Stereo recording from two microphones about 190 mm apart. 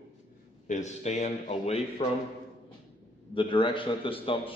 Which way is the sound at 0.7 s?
40° left (ahead or behind).